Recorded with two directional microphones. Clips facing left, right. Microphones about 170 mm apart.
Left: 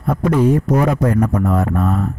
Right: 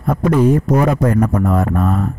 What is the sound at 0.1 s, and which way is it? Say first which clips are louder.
A man's voice: right 1 dB; 45° right (ahead or behind).